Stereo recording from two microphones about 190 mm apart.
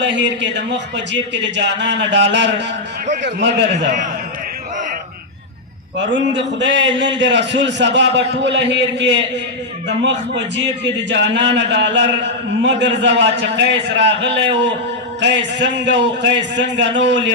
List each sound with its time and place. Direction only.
0.0 s a man's voice: 70° right (ahead or behind)
3.7 s a man's voice: 40° right (ahead or behind)
6.0 s a man's voice: 70° right (ahead or behind)